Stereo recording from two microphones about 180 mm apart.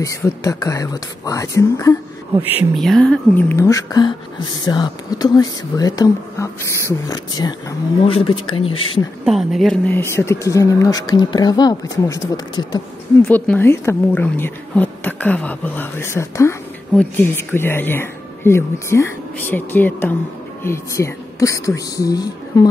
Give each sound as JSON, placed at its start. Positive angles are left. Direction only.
{"t": 0.0, "sound": "speech", "side_deg": 20}
{"t": 2.7, "sound": "speech", "side_deg": 0}
{"t": 9.2, "sound": "speech", "side_deg": 0}